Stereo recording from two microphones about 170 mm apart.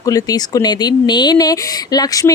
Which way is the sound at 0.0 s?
20° left (ahead or behind).